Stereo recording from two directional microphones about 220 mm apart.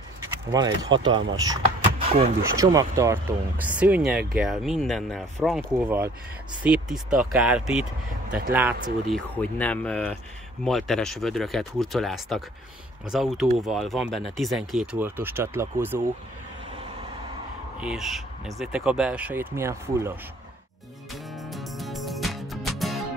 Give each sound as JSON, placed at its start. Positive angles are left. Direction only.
{"t": 0.2, "sound": "a sound", "side_deg": -15}
{"t": 0.8, "sound": "speech", "side_deg": -20}
{"t": 9.1, "sound": "speech", "side_deg": 5}
{"t": 17.7, "sound": "speech", "side_deg": -5}
{"t": 21.1, "sound": "music", "side_deg": 0}